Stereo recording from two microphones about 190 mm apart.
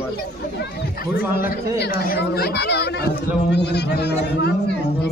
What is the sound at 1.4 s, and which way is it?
Speech, 55° left (ahead or behind).